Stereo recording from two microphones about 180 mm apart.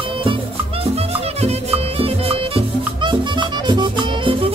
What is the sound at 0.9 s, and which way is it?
Music, 35° right (ahead or behind).